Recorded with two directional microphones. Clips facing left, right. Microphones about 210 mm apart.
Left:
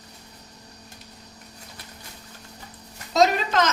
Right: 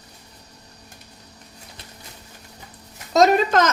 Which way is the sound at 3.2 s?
50° right (ahead or behind).